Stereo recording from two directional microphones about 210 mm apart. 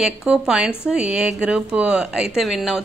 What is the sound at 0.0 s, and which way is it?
Speech, 5° right (ahead or behind).